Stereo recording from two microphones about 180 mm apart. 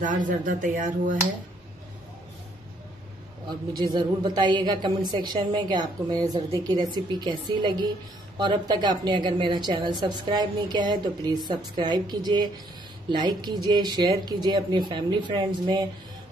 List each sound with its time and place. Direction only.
0.0 s speech: 45° right (ahead or behind)
3.7 s a woman's voice: 25° right (ahead or behind)